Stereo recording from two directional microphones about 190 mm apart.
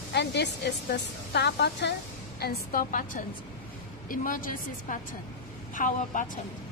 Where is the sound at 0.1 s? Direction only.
65° left (ahead or behind); by 6.3 s 40° left (ahead or behind).